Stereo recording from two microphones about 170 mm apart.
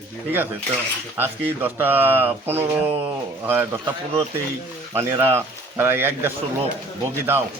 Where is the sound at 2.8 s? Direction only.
35° right (ahead or behind).